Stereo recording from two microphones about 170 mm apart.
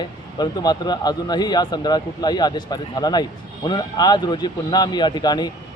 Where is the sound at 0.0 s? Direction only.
25° left (ahead or behind).